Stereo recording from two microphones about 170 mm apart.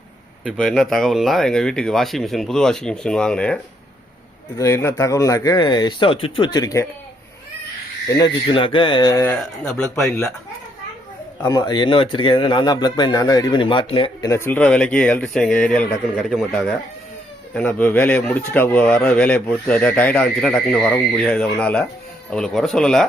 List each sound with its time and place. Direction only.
0.5 s speech: centre (ahead or behind); by 6.8 s 20° left (ahead or behind)
8.1 s speech: 25° left (ahead or behind)
9.4 s speech: centre (ahead or behind)
10.0 s speech: 15° left (ahead or behind)
11.4 s speech: 20° left (ahead or behind)
14.3 s speech: 15° left (ahead or behind)